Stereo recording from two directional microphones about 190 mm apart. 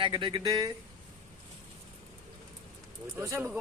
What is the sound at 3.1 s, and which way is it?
Speech, 10° right (ahead or behind).